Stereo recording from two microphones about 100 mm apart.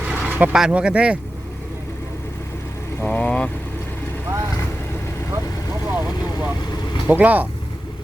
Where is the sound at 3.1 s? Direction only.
10° left (ahead or behind).